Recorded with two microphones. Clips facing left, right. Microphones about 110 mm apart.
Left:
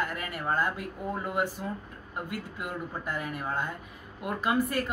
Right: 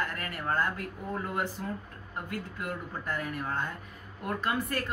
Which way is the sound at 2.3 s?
10° left (ahead or behind).